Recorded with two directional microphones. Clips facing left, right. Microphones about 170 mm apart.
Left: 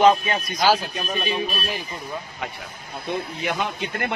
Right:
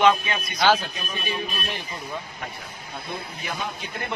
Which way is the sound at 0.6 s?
5° left (ahead or behind).